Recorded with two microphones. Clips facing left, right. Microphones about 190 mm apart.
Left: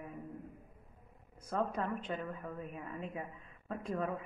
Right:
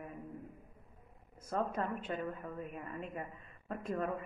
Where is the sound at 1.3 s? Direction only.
5° right (ahead or behind).